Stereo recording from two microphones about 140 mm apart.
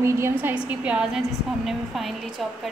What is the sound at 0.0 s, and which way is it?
A woman's voice, 15° right (ahead or behind).